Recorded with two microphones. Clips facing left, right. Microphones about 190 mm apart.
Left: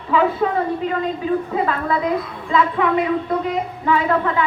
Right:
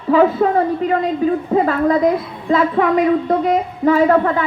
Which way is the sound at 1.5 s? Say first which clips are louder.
Right 6 dB; 40° right (ahead or behind).